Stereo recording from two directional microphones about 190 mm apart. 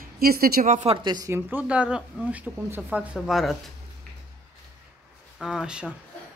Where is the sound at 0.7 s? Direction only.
30° right (ahead or behind); by 3.5 s centre (ahead or behind).